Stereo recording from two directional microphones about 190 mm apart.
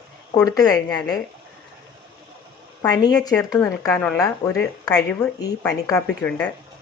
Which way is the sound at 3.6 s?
15° left (ahead or behind).